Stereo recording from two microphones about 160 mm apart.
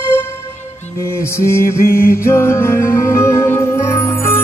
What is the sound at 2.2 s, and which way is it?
Music, 15° left (ahead or behind).